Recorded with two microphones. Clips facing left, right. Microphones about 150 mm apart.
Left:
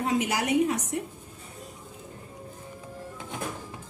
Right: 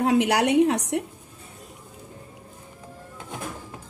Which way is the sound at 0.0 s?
70° right (ahead or behind).